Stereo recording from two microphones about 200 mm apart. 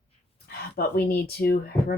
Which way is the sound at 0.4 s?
50° left (ahead or behind).